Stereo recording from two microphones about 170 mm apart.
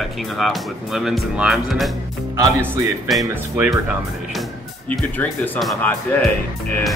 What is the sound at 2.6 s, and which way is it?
Speech, 15° right (ahead or behind).